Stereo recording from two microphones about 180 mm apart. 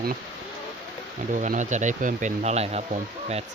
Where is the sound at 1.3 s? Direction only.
45° right (ahead or behind).